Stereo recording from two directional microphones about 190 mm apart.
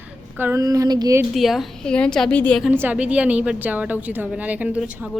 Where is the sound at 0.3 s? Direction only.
15° right (ahead or behind).